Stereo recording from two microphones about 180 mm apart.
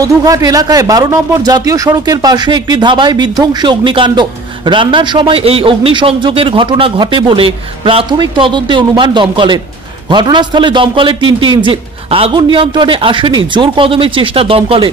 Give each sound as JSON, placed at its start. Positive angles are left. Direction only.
{"t": 0.0, "sound": "speech", "side_deg": -20}